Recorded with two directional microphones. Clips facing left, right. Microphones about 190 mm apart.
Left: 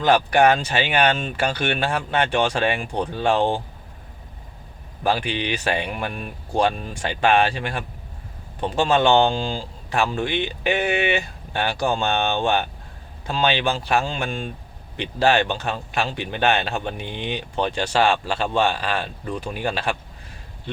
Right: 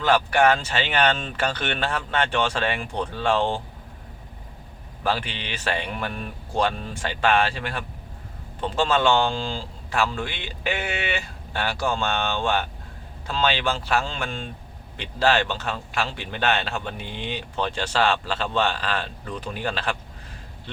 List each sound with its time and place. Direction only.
0.0 s speech: 15° left (ahead or behind)
5.0 s speech: 15° left (ahead or behind)